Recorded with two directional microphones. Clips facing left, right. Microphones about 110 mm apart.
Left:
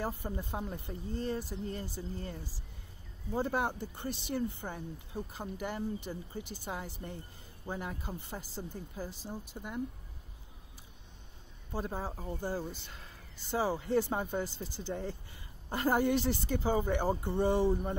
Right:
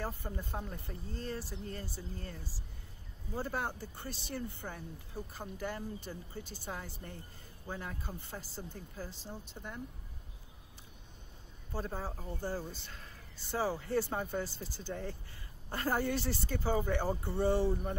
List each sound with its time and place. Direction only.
0.0 s speech: 15° left (ahead or behind)
11.7 s speech: 15° left (ahead or behind)